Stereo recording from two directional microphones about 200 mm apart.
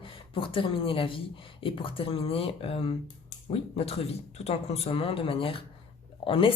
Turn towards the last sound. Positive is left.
turn(degrees=25)  # may be behind; listen again after turning